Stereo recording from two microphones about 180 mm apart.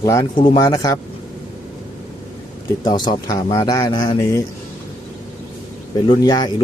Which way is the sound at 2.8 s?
25° left (ahead or behind).